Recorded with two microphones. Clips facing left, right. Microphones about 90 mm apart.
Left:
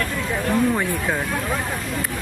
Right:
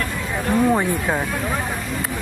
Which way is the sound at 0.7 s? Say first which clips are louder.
Right 3 dB; 20° right (ahead or behind).